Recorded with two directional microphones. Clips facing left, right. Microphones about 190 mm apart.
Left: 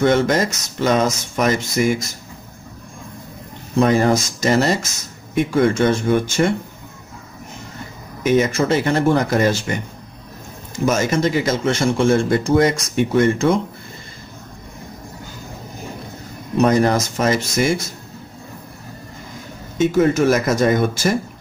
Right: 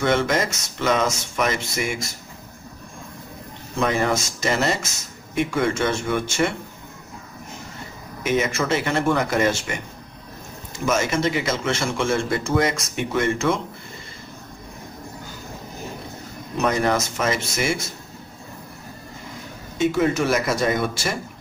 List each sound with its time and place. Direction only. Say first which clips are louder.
0.0 s speech: left 5 dB; 40° left (ahead or behind)
3.8 s speech: left 6 dB; 35° left (ahead or behind)
8.2 s speech: left 6 dB; 35° left (ahead or behind)
10.9 s speech: left 3 dB; 40° left (ahead or behind)
16.5 s speech: left 6 dB; 35° left (ahead or behind)
19.8 s speech: left 5 dB; 40° left (ahead or behind)